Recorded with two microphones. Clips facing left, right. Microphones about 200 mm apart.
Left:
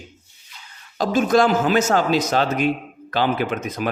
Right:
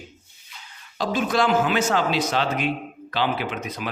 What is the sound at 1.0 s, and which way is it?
Speech, 45° left (ahead or behind).